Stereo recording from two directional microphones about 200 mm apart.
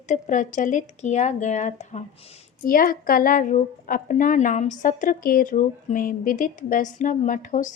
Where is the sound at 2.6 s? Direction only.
45° left (ahead or behind).